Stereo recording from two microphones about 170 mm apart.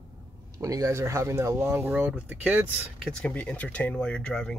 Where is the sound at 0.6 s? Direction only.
20° right (ahead or behind).